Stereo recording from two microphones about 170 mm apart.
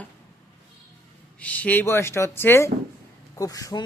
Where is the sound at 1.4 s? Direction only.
10° left (ahead or behind).